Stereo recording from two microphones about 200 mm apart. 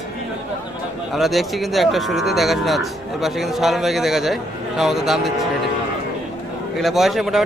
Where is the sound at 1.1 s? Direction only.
Centre (ahead or behind).